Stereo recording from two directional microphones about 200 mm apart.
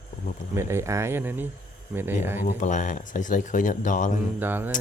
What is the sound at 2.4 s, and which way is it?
Speech, 40° left (ahead or behind).